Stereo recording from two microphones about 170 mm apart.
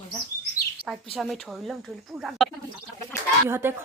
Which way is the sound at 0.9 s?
Centre (ahead or behind).